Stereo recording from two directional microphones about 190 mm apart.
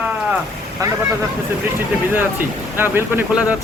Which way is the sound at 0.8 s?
15° right (ahead or behind).